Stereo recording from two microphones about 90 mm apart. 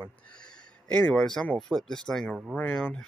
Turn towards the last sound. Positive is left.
turn(degrees=15)  # may be behind; listen again after turning